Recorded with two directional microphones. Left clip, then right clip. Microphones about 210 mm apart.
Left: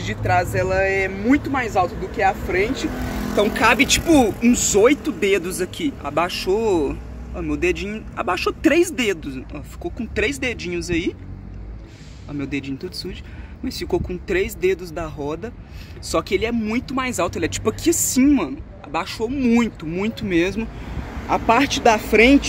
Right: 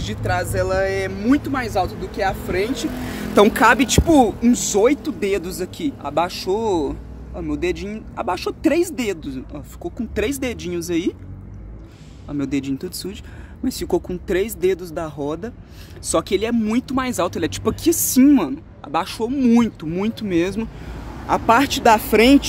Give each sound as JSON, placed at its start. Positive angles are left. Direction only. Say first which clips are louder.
{"t": 0.0, "sound": "speech", "louder": "left 3 dB", "side_deg": -10}
{"t": 4.5, "sound": "speech", "louder": "left 1 dB", "side_deg": 0}
{"t": 12.3, "sound": "speech", "louder": "right 3 dB", "side_deg": -20}